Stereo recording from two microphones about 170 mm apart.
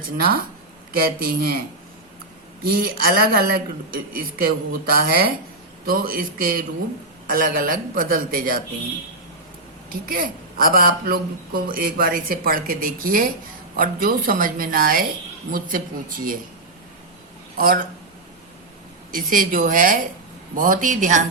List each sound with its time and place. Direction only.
0.2 s a woman's voice: 60° right (ahead or behind)
2.6 s a woman's voice: 60° right (ahead or behind)
9.9 s a woman's voice: 55° right (ahead or behind)
17.6 s a woman's voice: 55° right (ahead or behind)
19.1 s a woman's voice: 55° right (ahead or behind)